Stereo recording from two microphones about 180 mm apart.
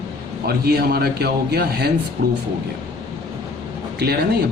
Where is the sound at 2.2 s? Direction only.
55° right (ahead or behind).